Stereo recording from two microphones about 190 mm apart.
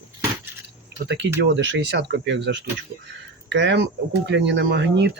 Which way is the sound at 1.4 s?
70° right (ahead or behind).